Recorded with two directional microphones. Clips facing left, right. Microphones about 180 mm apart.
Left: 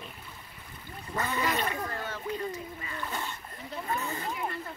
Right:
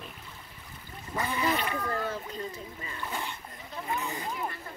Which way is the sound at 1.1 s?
10° right (ahead or behind).